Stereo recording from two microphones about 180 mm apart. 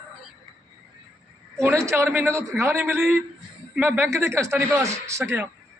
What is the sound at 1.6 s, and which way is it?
A man's voice, 15° right (ahead or behind).